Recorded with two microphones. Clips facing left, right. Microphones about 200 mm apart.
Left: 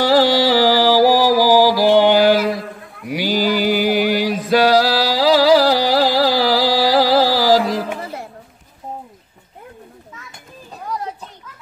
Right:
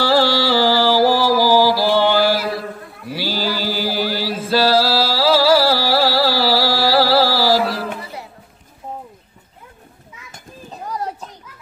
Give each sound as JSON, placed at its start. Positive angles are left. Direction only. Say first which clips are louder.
{"t": 0.0, "sound": "music", "louder": "left 3 dB", "side_deg": 20}
{"t": 3.1, "sound": "mantra", "louder": "left 5 dB", "side_deg": 15}
{"t": 8.0, "sound": "chatter", "louder": "left 4 dB", "side_deg": 50}